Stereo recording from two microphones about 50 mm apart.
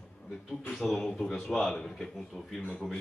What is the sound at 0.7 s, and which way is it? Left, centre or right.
Speech, centre.